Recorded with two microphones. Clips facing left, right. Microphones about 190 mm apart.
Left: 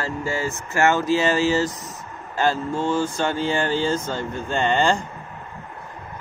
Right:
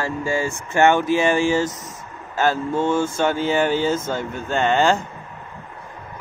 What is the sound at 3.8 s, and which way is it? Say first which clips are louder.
Speech: right 2 dB; 10° right (ahead or behind).